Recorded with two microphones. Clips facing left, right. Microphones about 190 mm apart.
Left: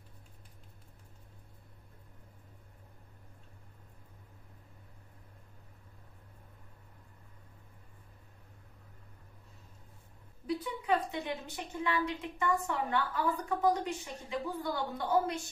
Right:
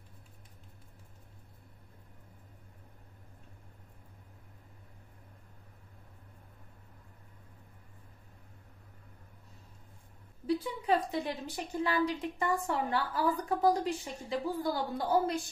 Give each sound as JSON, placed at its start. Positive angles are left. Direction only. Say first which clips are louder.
{"t": 10.4, "sound": "a woman's voice", "louder": "right 3 dB", "side_deg": -35}